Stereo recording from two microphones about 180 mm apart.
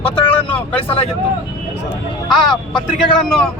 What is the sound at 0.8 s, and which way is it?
Speech, 35° left (ahead or behind).